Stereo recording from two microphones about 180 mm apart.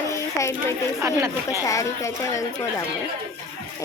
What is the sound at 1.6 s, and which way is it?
Speech, 15° left (ahead or behind).